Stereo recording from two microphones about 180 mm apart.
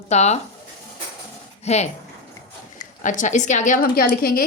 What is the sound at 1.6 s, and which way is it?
Speech, 40° left (ahead or behind).